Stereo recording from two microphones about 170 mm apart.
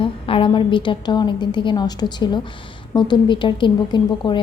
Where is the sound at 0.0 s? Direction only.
30° left (ahead or behind).